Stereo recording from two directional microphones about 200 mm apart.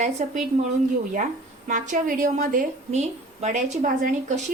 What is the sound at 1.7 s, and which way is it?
A woman's voice, 40° right (ahead or behind).